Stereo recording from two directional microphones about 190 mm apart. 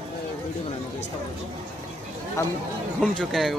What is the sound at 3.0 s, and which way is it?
Speech, 5° left (ahead or behind).